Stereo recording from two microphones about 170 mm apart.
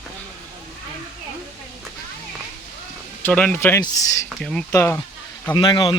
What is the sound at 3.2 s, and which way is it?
A man's voice, 10° left (ahead or behind).